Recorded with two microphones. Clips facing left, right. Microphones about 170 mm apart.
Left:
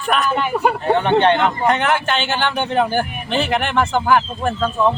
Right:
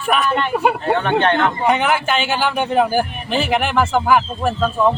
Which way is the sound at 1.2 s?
15° left (ahead or behind).